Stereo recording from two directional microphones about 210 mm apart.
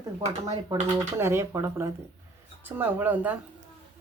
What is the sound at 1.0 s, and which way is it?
Speech, 10° right (ahead or behind).